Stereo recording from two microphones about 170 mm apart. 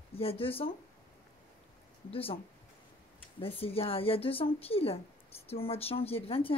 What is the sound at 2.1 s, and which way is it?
Speech, 35° left (ahead or behind).